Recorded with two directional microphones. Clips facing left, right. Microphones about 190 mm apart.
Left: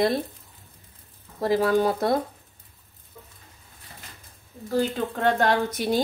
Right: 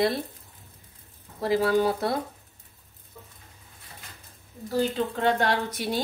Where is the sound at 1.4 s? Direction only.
45° left (ahead or behind).